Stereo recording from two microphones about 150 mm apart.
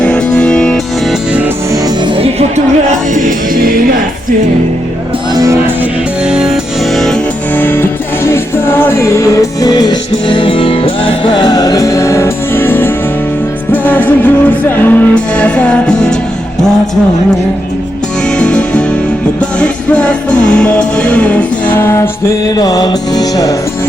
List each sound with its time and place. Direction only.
0.0 s music: 10° left (ahead or behind)
2.1 s music: 40° right (ahead or behind)
3.2 s music: 65° right (ahead or behind)
5.3 s music: 25° right (ahead or behind)
6.2 s music: 5° right (ahead or behind)
7.5 s music: 15° left (ahead or behind)
18.3 s music: 5° left (ahead or behind); by 23.6 s 25° left (ahead or behind)